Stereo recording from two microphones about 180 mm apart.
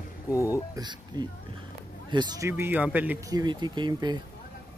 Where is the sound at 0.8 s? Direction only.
25° right (ahead or behind).